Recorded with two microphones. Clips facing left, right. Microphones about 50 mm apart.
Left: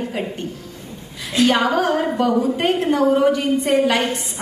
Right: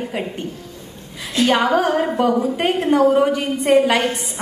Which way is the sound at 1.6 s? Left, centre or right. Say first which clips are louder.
Right 1 dB; centre.